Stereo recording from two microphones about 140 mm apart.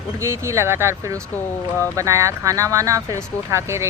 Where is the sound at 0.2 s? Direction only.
20° right (ahead or behind).